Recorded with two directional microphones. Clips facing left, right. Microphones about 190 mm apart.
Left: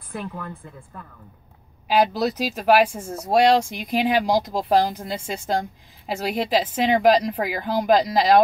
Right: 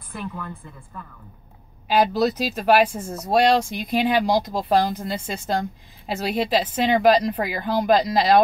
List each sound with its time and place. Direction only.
0.1 s a woman's voice: 50° left (ahead or behind)
2.0 s speech: 10° left (ahead or behind)